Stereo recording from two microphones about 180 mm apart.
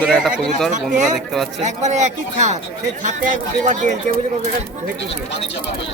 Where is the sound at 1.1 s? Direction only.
Centre (ahead or behind).